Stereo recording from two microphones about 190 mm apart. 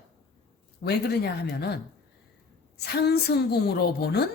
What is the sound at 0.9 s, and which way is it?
A woman's voice, 60° left (ahead or behind).